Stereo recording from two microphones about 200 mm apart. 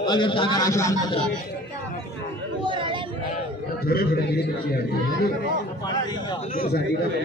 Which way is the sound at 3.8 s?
50° left (ahead or behind).